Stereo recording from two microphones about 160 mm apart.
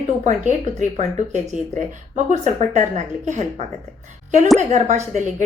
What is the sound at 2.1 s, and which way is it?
Speech, 45° right (ahead or behind).